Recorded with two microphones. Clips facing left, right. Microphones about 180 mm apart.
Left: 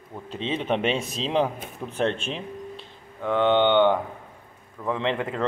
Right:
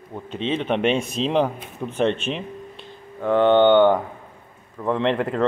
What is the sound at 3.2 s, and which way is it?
Speech, 45° right (ahead or behind).